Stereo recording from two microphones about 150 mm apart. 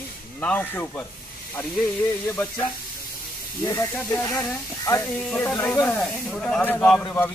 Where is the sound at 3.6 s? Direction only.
15° left (ahead or behind).